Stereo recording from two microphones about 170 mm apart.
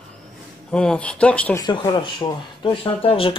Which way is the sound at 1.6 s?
25° left (ahead or behind).